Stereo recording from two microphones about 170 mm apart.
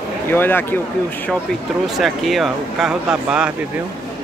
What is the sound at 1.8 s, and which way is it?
Speech, centre (ahead or behind).